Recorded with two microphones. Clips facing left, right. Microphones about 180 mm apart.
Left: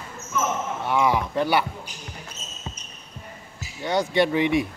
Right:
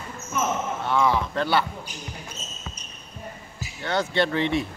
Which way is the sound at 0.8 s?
15° left (ahead or behind).